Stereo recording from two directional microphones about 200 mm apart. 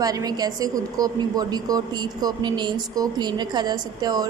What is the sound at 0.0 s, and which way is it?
A woman's voice, 20° right (ahead or behind).